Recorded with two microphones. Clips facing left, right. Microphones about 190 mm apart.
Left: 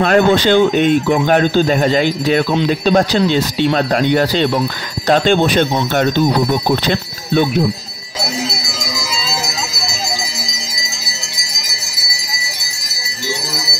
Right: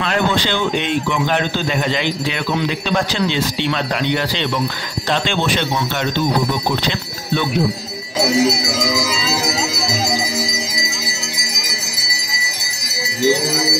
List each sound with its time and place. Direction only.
0.0 s speech: 45° left (ahead or behind)